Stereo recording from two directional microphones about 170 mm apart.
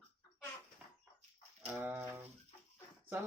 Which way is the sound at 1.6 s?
10° right (ahead or behind).